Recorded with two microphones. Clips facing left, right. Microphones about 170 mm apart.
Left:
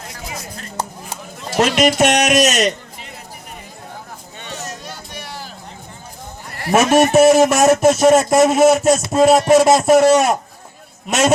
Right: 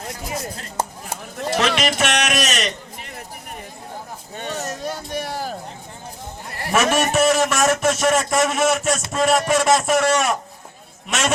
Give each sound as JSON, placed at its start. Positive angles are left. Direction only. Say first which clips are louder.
{"t": 1.5, "sound": "speech", "louder": "left 7 dB", "side_deg": 45}
{"t": 4.4, "sound": "a sound", "louder": "right 4 dB", "side_deg": -45}
{"t": 6.7, "sound": "a man's voice", "louder": "left 6 dB", "side_deg": 40}